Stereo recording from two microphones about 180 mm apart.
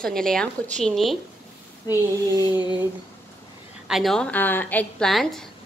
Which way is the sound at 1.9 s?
15° right (ahead or behind).